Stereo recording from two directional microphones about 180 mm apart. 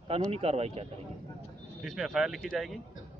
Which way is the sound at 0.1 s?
35° right (ahead or behind).